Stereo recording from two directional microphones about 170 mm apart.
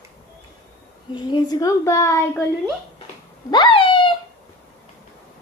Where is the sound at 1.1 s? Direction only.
25° left (ahead or behind).